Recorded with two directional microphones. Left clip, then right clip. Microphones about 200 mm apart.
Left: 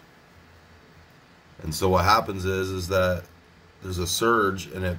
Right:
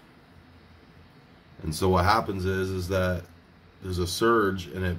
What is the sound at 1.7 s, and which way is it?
Speech, 5° left (ahead or behind).